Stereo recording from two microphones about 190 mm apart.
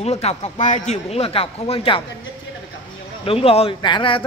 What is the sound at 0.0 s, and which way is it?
A man's voice, 35° left (ahead or behind).